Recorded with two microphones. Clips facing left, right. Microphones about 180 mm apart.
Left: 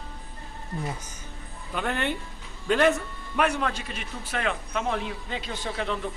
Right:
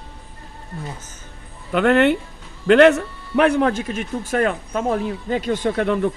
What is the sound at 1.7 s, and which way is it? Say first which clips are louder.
A man's voice: right 13 dB; 75° right (ahead or behind).